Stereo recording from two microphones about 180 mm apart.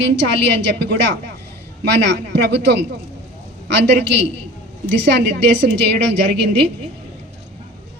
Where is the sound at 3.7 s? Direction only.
75° right (ahead or behind).